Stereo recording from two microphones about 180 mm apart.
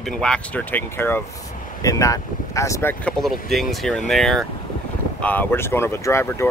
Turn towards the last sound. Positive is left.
turn(degrees=15)  # may be behind; listen again after turning